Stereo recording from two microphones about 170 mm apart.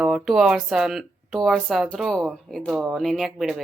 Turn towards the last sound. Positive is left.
turn(degrees=0)  # may be behind; listen again after turning